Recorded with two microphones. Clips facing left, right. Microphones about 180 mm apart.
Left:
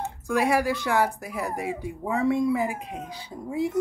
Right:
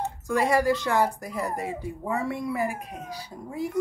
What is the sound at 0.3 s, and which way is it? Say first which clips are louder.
Speech: right 1 dB; 10° left (ahead or behind).